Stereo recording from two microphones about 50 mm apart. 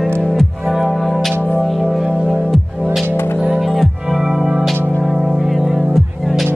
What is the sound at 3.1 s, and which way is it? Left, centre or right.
Music, left.